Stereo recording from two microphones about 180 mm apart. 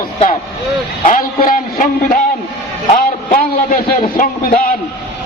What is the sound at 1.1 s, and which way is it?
A man's voice, 50° left (ahead or behind).